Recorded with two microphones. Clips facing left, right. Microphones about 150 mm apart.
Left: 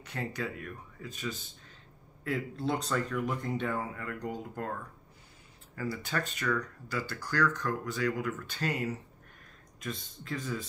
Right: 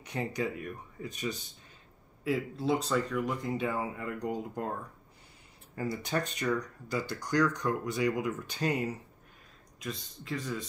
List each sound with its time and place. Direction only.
0.0 s speech: 15° right (ahead or behind)
2.2 s speech: 5° right (ahead or behind)
5.8 s speech: 20° right (ahead or behind)
9.8 s speech: centre (ahead or behind)